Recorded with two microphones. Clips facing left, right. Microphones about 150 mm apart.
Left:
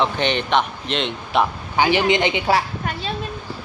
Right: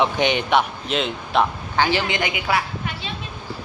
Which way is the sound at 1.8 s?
20° left (ahead or behind).